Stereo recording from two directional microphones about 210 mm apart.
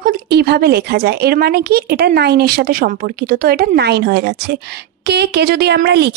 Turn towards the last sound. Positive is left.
turn(degrees=-50)  # may be behind; listen again after turning